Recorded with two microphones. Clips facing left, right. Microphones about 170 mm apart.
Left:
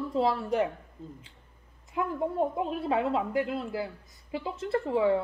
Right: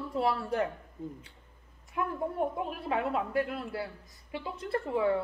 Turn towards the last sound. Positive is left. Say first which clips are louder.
# left 3 dB
turn(degrees=20)  # may be behind; listen again after turning